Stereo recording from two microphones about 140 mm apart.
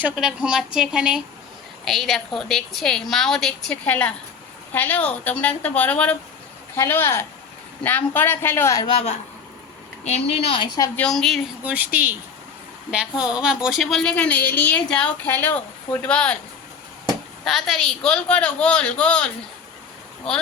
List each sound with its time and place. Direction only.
0.0 s a woman's voice: 5° right (ahead or behind); by 8.8 s 20° left (ahead or behind)
8.8 s a woman's voice: 40° left (ahead or behind)
10.9 s a woman's voice: 5° left (ahead or behind)
11.6 s a woman's voice: 10° right (ahead or behind); by 16.4 s 10° left (ahead or behind)
17.4 s a woman's voice: 5° left (ahead or behind)